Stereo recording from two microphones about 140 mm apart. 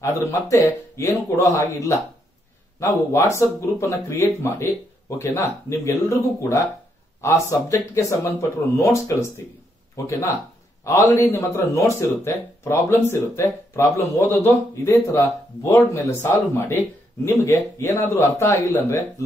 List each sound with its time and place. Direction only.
0.0 s speech: 20° left (ahead or behind)
10.8 s speech: 20° left (ahead or behind)